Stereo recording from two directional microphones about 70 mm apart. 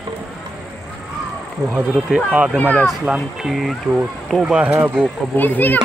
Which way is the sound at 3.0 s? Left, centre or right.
Centre.